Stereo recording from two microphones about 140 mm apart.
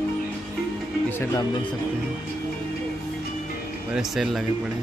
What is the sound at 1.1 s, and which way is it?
Speech, 20° left (ahead or behind).